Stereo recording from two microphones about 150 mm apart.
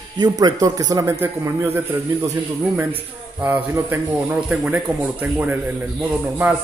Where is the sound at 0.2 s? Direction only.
25° right (ahead or behind).